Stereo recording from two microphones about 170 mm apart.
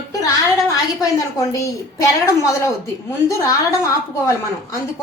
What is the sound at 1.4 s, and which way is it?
A woman's voice, 20° left (ahead or behind).